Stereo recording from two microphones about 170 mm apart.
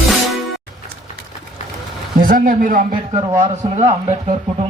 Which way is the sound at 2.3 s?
55° right (ahead or behind).